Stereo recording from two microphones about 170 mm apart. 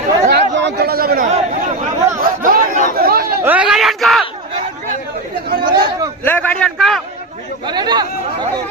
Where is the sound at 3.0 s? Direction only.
65° right (ahead or behind).